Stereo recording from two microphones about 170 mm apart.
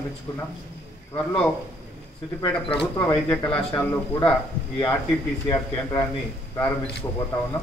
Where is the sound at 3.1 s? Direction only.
10° left (ahead or behind).